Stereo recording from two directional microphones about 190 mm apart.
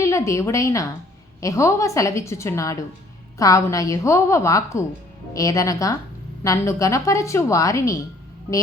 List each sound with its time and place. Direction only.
0.0 s a woman's voice: 15° left (ahead or behind)